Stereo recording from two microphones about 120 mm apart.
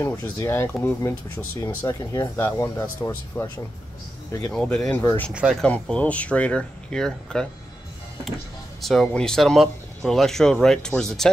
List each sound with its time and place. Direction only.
0.0 s speech: 25° left (ahead or behind)
4.6 s speech: 5° left (ahead or behind)
5.3 s speech: 10° right (ahead or behind)
5.6 s speech: 10° left (ahead or behind)
8.8 s speech: centre (ahead or behind)